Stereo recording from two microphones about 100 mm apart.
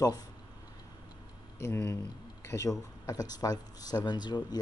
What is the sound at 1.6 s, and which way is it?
Speech, 25° left (ahead or behind).